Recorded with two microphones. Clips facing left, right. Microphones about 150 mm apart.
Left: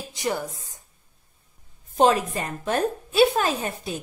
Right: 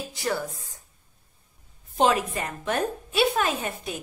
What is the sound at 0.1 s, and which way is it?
Speech, 15° left (ahead or behind).